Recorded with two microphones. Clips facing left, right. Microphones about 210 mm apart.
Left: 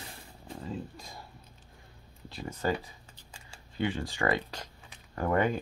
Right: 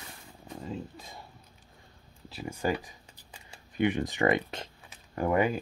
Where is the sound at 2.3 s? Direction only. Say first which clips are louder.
Right 1 dB; 10° right (ahead or behind).